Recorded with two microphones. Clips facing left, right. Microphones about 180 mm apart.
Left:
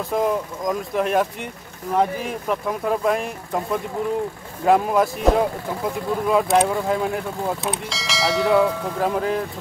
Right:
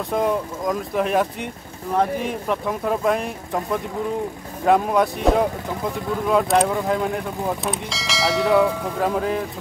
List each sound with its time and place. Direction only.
0.1 s speech: centre (ahead or behind)